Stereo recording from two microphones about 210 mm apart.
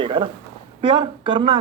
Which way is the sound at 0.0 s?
25° right (ahead or behind).